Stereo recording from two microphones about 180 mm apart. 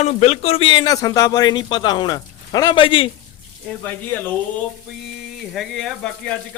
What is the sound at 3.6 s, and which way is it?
Speech, 10° left (ahead or behind).